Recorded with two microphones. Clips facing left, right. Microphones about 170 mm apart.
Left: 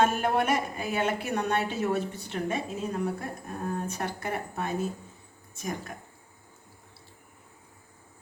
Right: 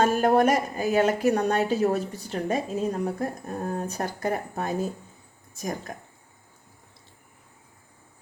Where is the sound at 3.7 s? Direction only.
35° right (ahead or behind).